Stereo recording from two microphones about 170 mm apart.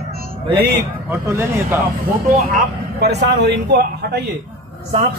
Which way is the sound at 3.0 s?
80° right.